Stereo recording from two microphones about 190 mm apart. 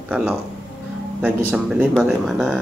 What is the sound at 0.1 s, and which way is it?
Speech, 5° right (ahead or behind).